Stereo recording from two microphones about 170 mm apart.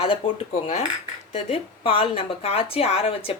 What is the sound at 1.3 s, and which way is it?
A woman's voice, 35° left (ahead or behind).